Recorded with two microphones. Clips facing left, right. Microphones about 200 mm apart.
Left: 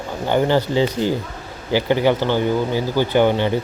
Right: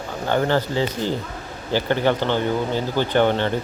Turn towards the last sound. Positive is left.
turn(degrees=10)  # may be behind; listen again after turning